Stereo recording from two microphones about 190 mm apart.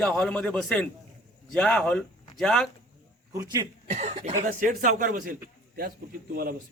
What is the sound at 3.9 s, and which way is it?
Cough, 35° right (ahead or behind).